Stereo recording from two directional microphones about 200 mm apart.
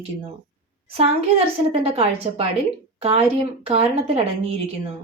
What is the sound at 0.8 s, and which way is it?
A woman's voice, 30° right (ahead or behind).